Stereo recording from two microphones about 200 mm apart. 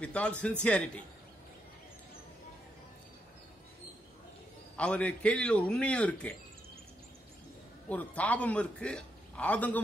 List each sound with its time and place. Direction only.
0.0 s a man's voice: 5° left (ahead or behind)
4.7 s a man's voice: 5° left (ahead or behind)
7.9 s a man's voice: 5° left (ahead or behind)